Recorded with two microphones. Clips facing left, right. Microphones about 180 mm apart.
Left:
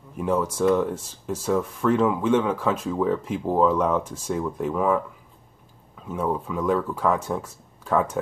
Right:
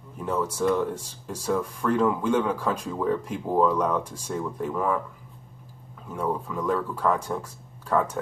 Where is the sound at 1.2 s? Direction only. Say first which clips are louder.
Left 3 dB; 5° left (ahead or behind).